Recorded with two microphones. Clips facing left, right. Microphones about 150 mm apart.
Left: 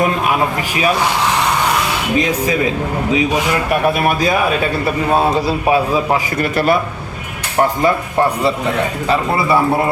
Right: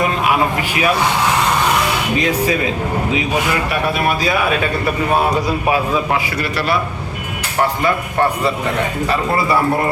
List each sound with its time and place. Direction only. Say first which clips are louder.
5.3 s a man's voice: left 2 dB; 30° left (ahead or behind)
6.3 s a man's voice: left 5 dB; 45° left (ahead or behind)